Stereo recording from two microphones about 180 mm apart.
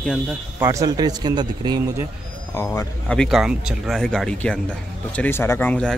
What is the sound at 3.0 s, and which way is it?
Speech, 5° left (ahead or behind).